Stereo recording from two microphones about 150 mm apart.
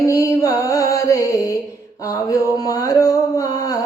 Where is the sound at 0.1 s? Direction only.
20° left (ahead or behind).